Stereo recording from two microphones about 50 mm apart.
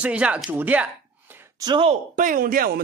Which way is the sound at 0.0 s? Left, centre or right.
Right.